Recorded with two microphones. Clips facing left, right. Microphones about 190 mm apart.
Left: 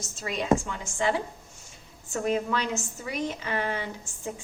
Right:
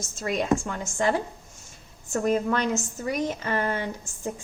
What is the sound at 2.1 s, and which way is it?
A woman's voice, 45° right (ahead or behind).